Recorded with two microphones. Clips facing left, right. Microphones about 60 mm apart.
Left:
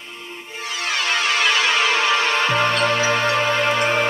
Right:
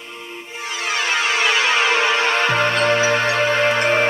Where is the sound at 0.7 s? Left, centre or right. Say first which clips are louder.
Right 1 dB; centre.